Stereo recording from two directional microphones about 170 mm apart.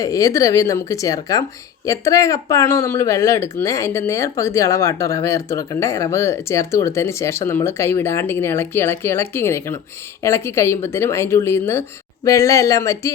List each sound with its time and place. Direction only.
0.0 s speech: 20° left (ahead or behind)